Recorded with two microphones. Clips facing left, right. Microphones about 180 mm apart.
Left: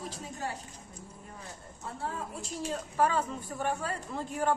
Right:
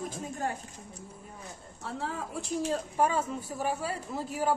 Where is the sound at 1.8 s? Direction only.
90° right.